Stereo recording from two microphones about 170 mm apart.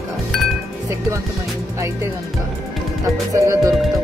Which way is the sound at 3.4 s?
15° right (ahead or behind).